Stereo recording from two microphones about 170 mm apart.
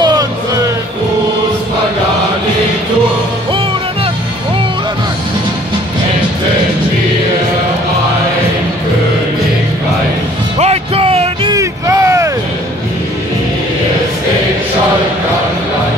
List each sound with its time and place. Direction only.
0.0 s music: 25° right (ahead or behind)
10.6 s music: 35° right (ahead or behind)
11.5 s a sound: 20° right (ahead or behind)